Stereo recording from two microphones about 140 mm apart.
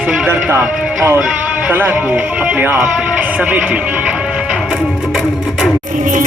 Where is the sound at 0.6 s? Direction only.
5° right (ahead or behind).